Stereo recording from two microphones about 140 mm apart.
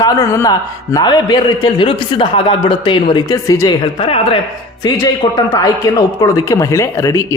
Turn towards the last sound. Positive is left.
turn(degrees=20)  # may be behind; listen again after turning